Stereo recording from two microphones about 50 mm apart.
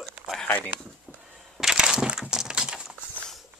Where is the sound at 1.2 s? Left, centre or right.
Centre.